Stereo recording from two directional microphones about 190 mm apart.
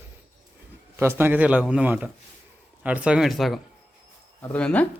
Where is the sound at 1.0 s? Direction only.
10° right (ahead or behind); by 4.9 s 5° left (ahead or behind).